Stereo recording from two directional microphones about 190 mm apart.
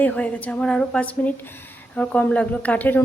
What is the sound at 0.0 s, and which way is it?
A woman's voice, 10° left (ahead or behind).